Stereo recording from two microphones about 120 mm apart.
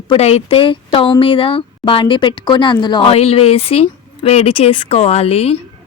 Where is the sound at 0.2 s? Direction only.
60° left (ahead or behind).